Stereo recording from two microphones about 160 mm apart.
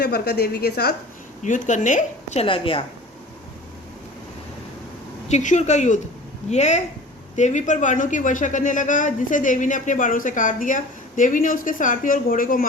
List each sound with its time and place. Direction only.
0.0 s a woman's voice: 90° left
1.5 s a woman's voice: 50° left (ahead or behind); by 2.8 s 35° left (ahead or behind)
5.3 s a woman's voice: 50° left (ahead or behind)